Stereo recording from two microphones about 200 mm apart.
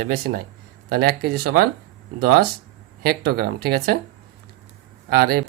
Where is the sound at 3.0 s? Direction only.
50° right (ahead or behind).